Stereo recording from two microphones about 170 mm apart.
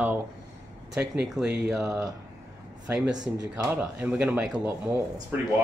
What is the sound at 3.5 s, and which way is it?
Speech, 10° right (ahead or behind).